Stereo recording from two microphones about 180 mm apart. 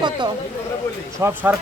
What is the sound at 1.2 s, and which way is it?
Speech, 10° right (ahead or behind).